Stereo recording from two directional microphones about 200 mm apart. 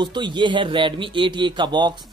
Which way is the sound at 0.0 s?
25° right (ahead or behind).